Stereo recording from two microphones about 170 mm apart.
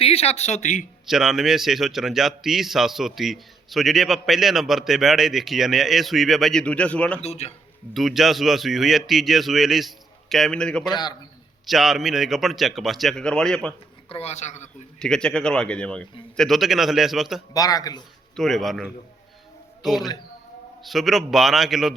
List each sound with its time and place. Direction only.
0.0 s speech: 35° left (ahead or behind)
1.0 s a man's voice: centre (ahead or behind)
7.2 s speech: 40° left (ahead or behind)
7.9 s a man's voice: centre (ahead or behind)
14.1 s speech: 40° left (ahead or behind)
14.9 s a man's voice: 5° left (ahead or behind)
17.5 s speech: 20° left (ahead or behind)
18.3 s a man's voice: centre (ahead or behind)